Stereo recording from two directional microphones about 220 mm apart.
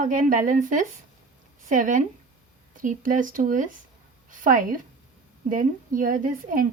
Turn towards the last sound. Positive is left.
turn(degrees=-35)  # may be behind; listen again after turning